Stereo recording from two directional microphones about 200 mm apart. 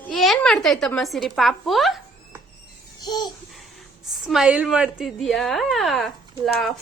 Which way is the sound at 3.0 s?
20° left (ahead or behind).